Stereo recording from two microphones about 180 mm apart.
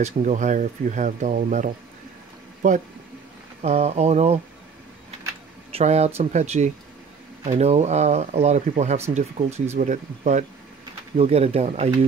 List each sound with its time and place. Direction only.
0.0 s speech: 40° right (ahead or behind)
5.7 s speech: 35° right (ahead or behind)